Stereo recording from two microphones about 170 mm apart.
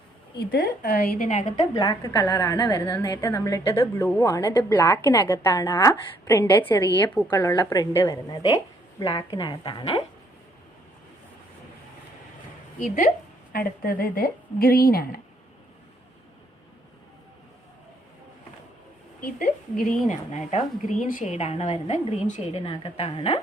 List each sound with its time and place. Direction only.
0.3 s speech: 65° left (ahead or behind)
1.3 s a woman's voice: 45° left (ahead or behind)
1.8 s a woman's voice: 20° left (ahead or behind)
13.5 s speech: 60° left (ahead or behind)
19.7 s speech: centre (ahead or behind)
20.1 s a woman's voice: 45° left (ahead or behind)